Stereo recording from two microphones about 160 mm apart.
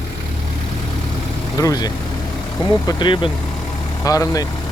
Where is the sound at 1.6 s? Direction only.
25° left (ahead or behind).